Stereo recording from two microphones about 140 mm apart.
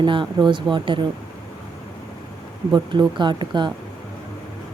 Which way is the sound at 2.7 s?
35° right (ahead or behind).